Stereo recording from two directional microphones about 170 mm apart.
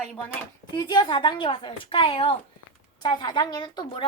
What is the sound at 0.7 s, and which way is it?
A woman's voice, 25° left (ahead or behind).